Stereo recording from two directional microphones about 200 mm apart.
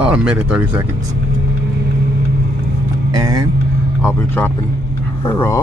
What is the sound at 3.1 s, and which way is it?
Speech, 20° right (ahead or behind).